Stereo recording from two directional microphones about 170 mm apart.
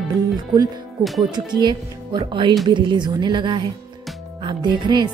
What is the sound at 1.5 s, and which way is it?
Speech, 25° right (ahead or behind).